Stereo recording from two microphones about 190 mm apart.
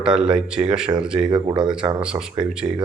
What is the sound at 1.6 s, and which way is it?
Speech, 5° right (ahead or behind).